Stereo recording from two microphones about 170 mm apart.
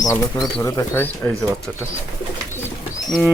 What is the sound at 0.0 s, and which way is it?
Speech, 20° left (ahead or behind).